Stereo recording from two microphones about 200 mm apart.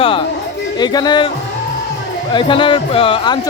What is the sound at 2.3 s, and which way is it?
Music, 25° left (ahead or behind).